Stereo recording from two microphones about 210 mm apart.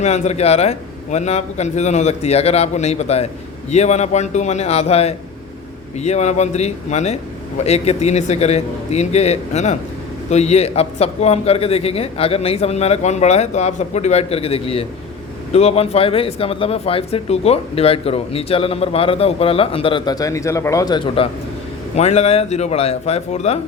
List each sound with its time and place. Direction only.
0.0 s speech: 30° left (ahead or behind)